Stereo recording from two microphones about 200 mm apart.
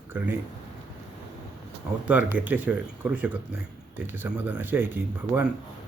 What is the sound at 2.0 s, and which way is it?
Speech, 10° right (ahead or behind).